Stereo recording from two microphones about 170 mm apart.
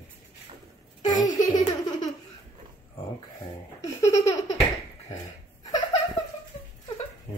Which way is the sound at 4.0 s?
20° left (ahead or behind).